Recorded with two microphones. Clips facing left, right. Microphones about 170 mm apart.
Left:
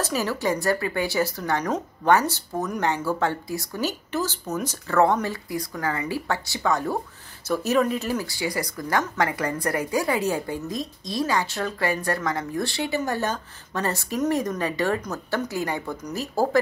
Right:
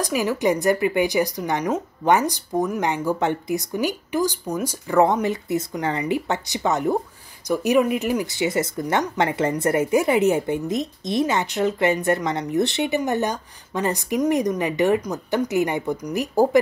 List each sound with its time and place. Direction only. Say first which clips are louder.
0.0 s speech: right 4 dB; 15° right (ahead or behind)